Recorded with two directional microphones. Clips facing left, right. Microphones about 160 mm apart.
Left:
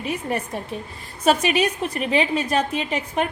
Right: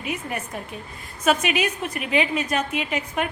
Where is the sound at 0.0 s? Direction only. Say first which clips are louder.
Left 4 dB; 35° left (ahead or behind).